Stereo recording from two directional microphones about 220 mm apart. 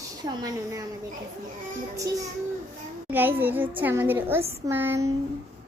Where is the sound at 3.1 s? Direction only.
10° right (ahead or behind).